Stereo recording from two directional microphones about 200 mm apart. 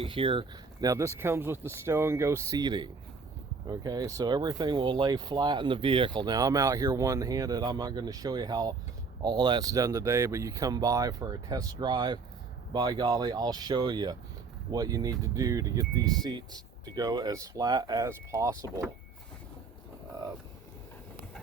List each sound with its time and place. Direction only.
0.0 s speech: 25° right (ahead or behind)